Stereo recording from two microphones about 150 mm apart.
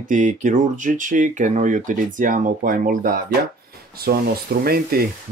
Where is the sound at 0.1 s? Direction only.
55° right (ahead or behind).